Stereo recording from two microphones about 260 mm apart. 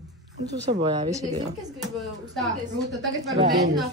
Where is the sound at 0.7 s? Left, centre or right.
Centre.